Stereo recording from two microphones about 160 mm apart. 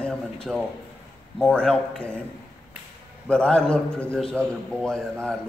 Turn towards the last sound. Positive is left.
turn(degrees=5)  # may be behind; listen again after turning